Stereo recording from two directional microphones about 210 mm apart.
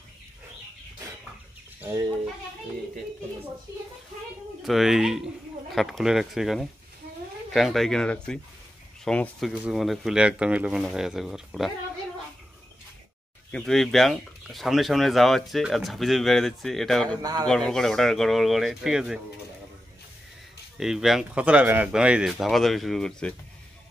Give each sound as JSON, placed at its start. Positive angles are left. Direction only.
{"t": 1.8, "sound": "speech", "side_deg": -20}
{"t": 4.6, "sound": "speech", "side_deg": 0}
{"t": 13.5, "sound": "speech", "side_deg": 5}
{"t": 17.2, "sound": "speech", "side_deg": -20}
{"t": 17.5, "sound": "speech", "side_deg": 5}
{"t": 20.7, "sound": "speech", "side_deg": 0}